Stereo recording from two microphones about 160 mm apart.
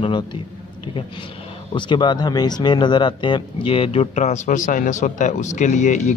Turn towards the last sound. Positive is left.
turn(degrees=50)  # may be behind; listen again after turning